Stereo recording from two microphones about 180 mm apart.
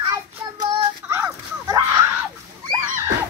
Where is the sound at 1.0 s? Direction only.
15° right (ahead or behind).